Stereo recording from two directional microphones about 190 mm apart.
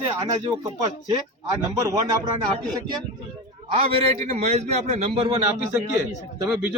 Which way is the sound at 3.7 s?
35° right (ahead or behind).